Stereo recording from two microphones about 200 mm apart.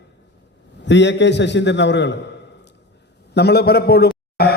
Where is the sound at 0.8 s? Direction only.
60° left (ahead or behind).